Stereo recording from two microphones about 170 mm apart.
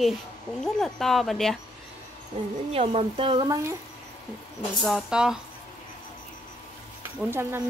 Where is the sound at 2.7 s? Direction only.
35° right (ahead or behind).